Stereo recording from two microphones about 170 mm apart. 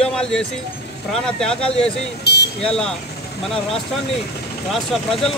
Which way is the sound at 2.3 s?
85° left.